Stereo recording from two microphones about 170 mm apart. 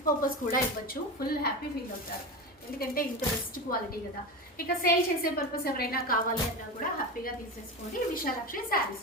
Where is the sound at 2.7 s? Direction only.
60° left (ahead or behind).